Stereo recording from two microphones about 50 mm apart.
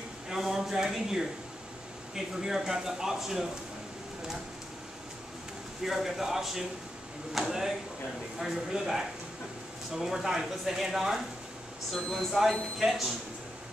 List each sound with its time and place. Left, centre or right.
0.3 s speech: centre
5.9 s speech: centre
11.9 s speech: centre